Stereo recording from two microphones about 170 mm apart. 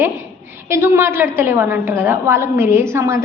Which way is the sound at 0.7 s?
15° right (ahead or behind).